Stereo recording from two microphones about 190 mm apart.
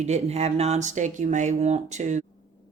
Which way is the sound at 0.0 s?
35° right (ahead or behind).